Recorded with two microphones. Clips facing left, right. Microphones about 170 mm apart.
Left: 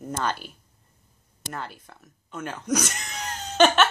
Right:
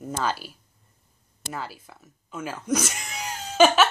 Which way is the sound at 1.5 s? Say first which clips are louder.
Right 1 dB; 5° right (ahead or behind).